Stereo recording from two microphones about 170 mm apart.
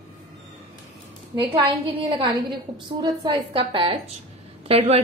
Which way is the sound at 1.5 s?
30° right (ahead or behind).